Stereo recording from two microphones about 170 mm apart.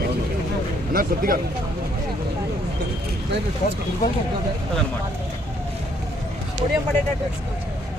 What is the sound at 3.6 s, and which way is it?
Speech, 45° left (ahead or behind).